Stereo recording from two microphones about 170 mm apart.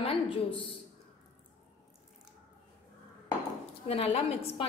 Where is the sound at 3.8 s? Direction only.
35° left (ahead or behind).